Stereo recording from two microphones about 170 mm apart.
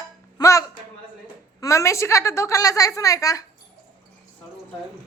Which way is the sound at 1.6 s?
15° left (ahead or behind).